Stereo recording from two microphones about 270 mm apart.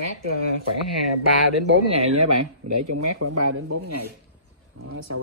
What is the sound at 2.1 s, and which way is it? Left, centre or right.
Speech, right.